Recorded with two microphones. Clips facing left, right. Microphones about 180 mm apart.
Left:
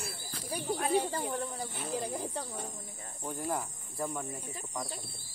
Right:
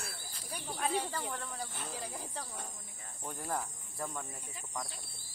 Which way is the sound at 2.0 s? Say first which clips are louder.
Left 7 dB; 25° left (ahead or behind).